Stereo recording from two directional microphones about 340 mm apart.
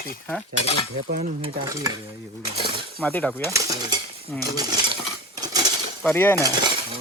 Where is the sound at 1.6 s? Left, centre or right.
Centre.